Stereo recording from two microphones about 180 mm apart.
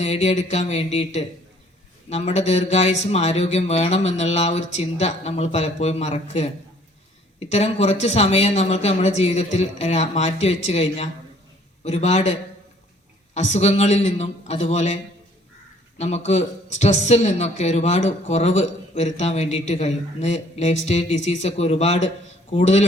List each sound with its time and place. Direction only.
0.0 s speech: 40° left (ahead or behind)
16.0 s speech: 40° left (ahead or behind)